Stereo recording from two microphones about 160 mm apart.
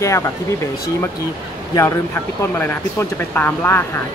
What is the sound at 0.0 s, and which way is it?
Speech, 20° left (ahead or behind).